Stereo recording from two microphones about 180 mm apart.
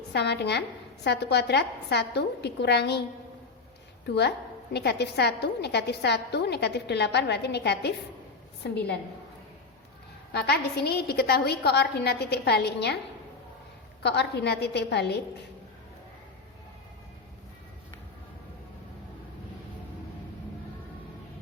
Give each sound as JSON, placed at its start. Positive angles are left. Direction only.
{"t": 0.1, "sound": "a woman's voice", "side_deg": 70}
{"t": 4.0, "sound": "a woman's voice", "side_deg": 65}
{"t": 10.3, "sound": "a woman's voice", "side_deg": 60}
{"t": 14.0, "sound": "a woman's voice", "side_deg": 70}